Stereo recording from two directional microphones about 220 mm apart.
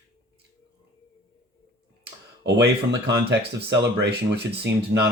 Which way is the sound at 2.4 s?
50° right (ahead or behind).